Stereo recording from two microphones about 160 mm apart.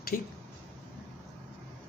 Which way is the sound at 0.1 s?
60° left (ahead or behind).